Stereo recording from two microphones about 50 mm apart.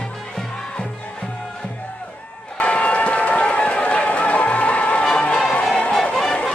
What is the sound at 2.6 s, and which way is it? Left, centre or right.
Run, left.